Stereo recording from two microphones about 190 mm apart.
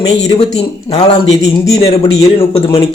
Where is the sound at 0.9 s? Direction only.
30° left (ahead or behind).